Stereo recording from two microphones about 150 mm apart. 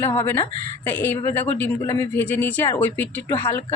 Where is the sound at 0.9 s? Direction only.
15° left (ahead or behind).